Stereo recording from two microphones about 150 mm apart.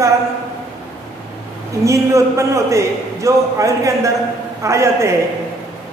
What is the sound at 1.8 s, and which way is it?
A man's voice, 20° right (ahead or behind).